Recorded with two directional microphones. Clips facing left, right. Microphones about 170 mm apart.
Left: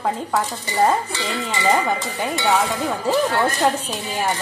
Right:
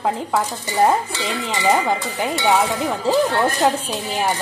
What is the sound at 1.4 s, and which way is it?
Speech, 15° right (ahead or behind).